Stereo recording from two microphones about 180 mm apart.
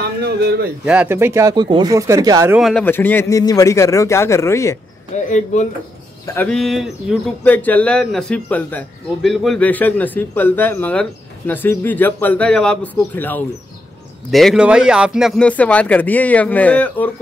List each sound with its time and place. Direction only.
0.0 s speech: 65° right (ahead or behind)
0.8 s speech: 10° right (ahead or behind)
2.5 s speech: centre (ahead or behind)
2.8 s a man's voice: 10° left (ahead or behind)
5.1 s speech: 40° left (ahead or behind)
6.2 s speech: 10° left (ahead or behind)
7.4 s a man's voice: 10° left (ahead or behind)